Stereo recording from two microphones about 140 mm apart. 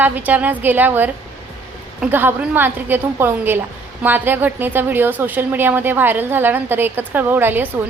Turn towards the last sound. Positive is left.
turn(degrees=-15)  # may be behind; listen again after turning